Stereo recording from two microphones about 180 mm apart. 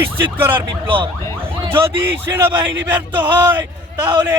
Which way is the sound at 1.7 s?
15° right (ahead or behind).